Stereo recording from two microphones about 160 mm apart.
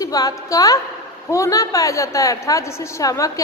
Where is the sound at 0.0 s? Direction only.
20° left (ahead or behind).